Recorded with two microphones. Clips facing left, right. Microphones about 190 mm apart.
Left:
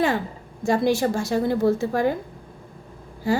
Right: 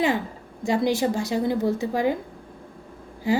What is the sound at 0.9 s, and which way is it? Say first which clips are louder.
A woman's voice: left 2 dB; 20° right (ahead or behind).